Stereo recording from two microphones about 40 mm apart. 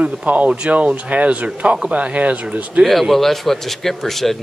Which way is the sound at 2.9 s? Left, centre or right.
Centre.